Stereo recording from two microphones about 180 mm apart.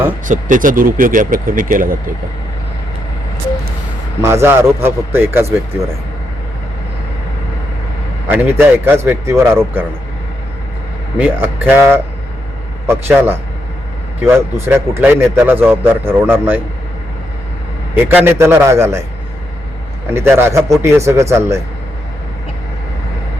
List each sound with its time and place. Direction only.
0.3 s speech: 45° right (ahead or behind)
4.2 s speech: 15° right (ahead or behind)
8.3 s speech: 10° right (ahead or behind)
11.2 s speech: 10° right (ahead or behind)
17.9 s speech: 10° right (ahead or behind)
20.1 s speech: 15° right (ahead or behind)